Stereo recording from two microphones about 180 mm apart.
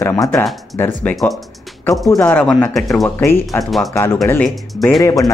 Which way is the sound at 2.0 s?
15° left (ahead or behind).